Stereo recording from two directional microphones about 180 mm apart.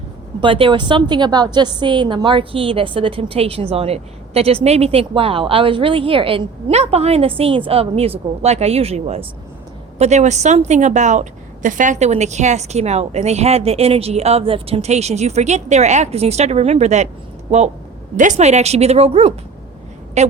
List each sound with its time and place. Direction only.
0.4 s a woman's voice: 30° right (ahead or behind)
18.2 s a woman's voice: 40° right (ahead or behind)